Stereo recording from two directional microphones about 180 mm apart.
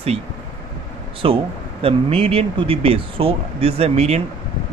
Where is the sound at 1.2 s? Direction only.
30° right (ahead or behind).